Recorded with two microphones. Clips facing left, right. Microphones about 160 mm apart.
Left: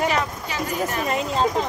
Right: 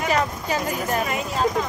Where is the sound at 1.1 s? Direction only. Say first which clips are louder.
Left 1 dB; 30° left (ahead or behind).